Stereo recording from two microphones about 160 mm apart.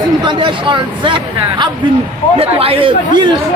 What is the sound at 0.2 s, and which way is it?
Speech, 30° right (ahead or behind).